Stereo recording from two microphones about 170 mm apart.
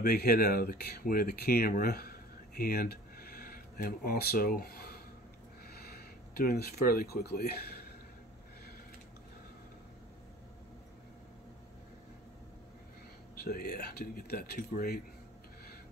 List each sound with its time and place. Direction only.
0.0 s speech: 65° left (ahead or behind)
13.4 s speech: 65° left (ahead or behind)